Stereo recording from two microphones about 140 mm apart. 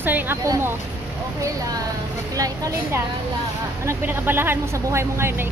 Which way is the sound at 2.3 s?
25° right (ahead or behind).